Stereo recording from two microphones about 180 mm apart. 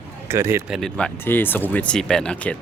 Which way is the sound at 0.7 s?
Centre (ahead or behind).